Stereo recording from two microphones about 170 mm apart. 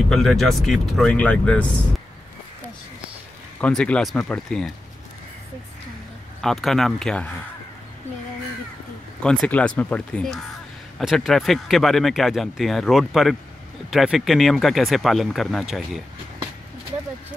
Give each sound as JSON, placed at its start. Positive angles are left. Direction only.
{"t": 0.1, "sound": "speech", "side_deg": 0}
{"t": 3.6, "sound": "speech", "side_deg": 5}
{"t": 6.4, "sound": "speech", "side_deg": 0}
{"t": 9.2, "sound": "speech", "side_deg": 5}